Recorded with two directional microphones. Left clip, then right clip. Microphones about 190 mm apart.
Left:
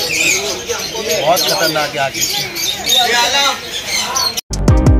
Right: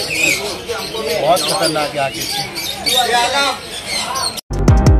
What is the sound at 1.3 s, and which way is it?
Speech, 5° left (ahead or behind).